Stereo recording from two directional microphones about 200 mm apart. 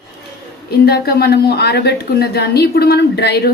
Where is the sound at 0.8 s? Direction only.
50° left (ahead or behind).